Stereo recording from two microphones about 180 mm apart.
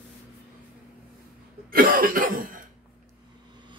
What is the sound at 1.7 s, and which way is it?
Cough, 50° right (ahead or behind).